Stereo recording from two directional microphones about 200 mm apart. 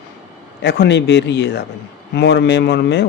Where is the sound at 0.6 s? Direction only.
60° left (ahead or behind).